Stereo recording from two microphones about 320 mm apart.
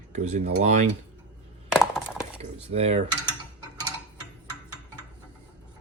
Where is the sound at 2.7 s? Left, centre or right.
Centre.